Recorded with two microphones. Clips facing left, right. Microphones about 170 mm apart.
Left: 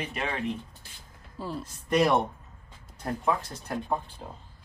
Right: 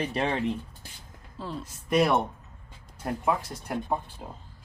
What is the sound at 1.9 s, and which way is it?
Speech, 5° right (ahead or behind).